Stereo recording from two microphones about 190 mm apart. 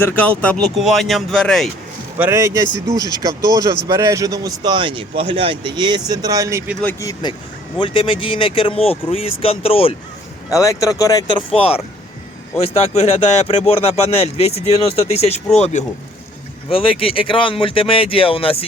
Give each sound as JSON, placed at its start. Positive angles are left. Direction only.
{"t": 0.0, "sound": "speech", "side_deg": 10}
{"t": 2.1, "sound": "a man's voice", "side_deg": -10}
{"t": 6.8, "sound": "speech", "side_deg": 20}
{"t": 10.5, "sound": "speech", "side_deg": 15}